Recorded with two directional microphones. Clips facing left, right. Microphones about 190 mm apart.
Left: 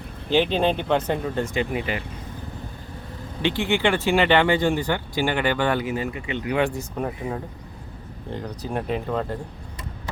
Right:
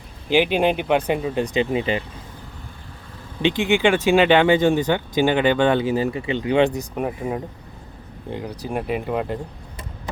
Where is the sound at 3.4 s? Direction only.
15° right (ahead or behind).